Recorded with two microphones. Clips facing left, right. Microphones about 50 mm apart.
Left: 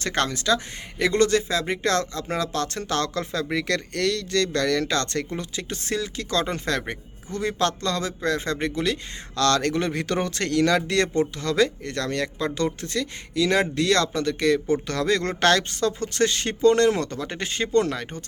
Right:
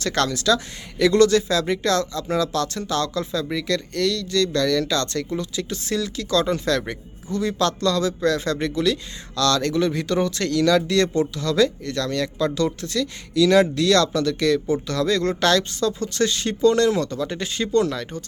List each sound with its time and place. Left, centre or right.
0.0 s speech: left